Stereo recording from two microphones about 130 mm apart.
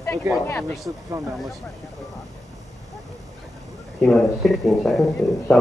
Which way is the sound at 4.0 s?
5° left (ahead or behind).